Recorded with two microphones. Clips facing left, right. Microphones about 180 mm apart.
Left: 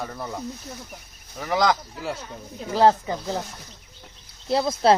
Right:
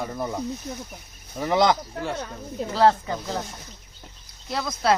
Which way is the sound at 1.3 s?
25° right (ahead or behind).